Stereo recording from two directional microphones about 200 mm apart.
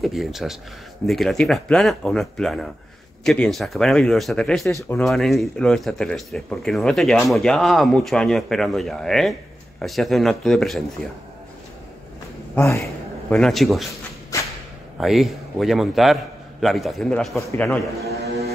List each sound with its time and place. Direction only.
0.0 s speech: centre (ahead or behind)
12.5 s a sound: 15° left (ahead or behind)
13.4 s speech: centre (ahead or behind)
14.3 s whip: 15° left (ahead or behind)
15.0 s speech: centre (ahead or behind)
17.4 s a man's voice: 15° left (ahead or behind)